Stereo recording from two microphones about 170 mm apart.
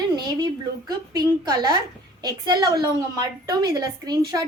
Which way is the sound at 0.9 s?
25° right (ahead or behind).